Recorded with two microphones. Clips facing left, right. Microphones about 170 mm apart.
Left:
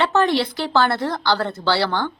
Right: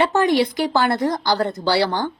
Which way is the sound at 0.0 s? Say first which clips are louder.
Right 2 dB; 15° right (ahead or behind).